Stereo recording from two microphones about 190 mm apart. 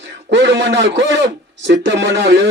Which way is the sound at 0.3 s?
70° right (ahead or behind).